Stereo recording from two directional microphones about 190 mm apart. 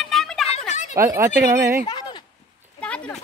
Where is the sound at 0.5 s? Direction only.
40° left (ahead or behind).